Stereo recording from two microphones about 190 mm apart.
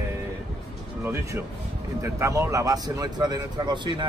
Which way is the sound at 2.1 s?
15° right (ahead or behind).